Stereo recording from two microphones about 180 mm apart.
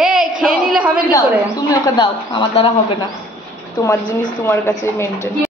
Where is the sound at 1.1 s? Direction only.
20° left (ahead or behind).